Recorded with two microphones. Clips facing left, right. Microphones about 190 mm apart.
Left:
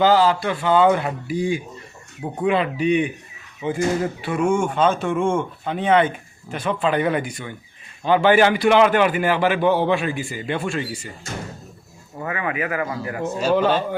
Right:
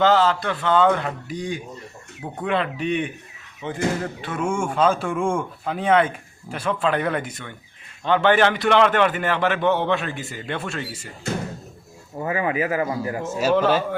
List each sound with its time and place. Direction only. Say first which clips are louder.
0.0 s a man's voice: left 2 dB; 5° left (ahead or behind)
4.0 s a sound: left 5 dB; 10° left (ahead or behind)
4.7 s a man's voice: left 1 dB; 5° right (ahead or behind)
12.2 s speech: right 2 dB; 30° right (ahead or behind)
13.3 s a man's voice: even; 5° right (ahead or behind)